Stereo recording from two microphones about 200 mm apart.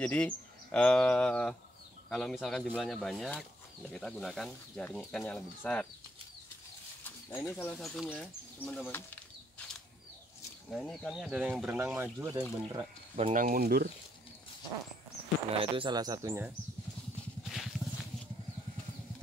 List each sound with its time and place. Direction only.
0.0 s speech: 5° left (ahead or behind)
7.2 s speech: 10° left (ahead or behind)
10.7 s speech: centre (ahead or behind); by 12.8 s 20° right (ahead or behind)
13.1 s speech: 35° right (ahead or behind)
15.5 s speech: 25° right (ahead or behind)
17.5 s a sound: centre (ahead or behind)